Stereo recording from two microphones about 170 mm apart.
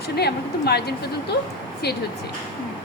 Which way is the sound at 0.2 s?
75° left (ahead or behind).